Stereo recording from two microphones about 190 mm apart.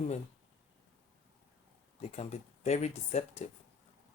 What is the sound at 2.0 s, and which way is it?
Speech, 35° left (ahead or behind).